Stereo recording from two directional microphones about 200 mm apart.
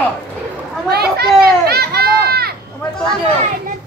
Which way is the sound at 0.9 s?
50° right (ahead or behind).